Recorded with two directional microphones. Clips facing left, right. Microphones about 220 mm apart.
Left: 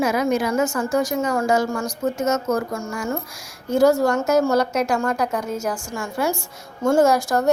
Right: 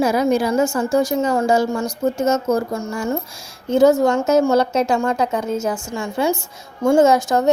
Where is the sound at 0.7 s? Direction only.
25° right (ahead or behind).